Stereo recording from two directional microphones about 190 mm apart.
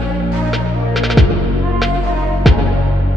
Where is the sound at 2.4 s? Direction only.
Centre (ahead or behind).